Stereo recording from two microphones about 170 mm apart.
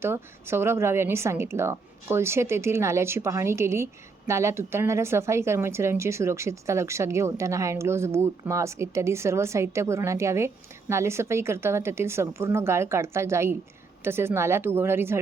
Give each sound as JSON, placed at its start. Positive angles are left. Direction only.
{"t": 0.0, "sound": "speech", "side_deg": -15}